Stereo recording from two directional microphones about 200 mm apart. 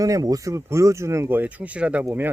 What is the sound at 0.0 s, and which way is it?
Speech, 15° right (ahead or behind).